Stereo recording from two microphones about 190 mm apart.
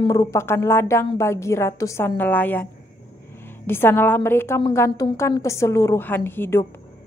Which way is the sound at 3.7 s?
10° left (ahead or behind).